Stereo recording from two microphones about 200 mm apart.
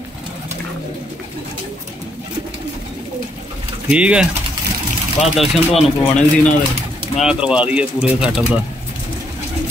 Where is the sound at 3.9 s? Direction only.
5° right (ahead or behind).